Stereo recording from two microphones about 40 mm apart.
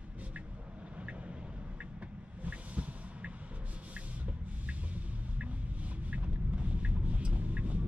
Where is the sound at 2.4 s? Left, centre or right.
Right.